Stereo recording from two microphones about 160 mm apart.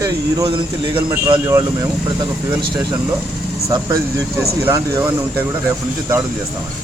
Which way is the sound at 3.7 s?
25° right (ahead or behind).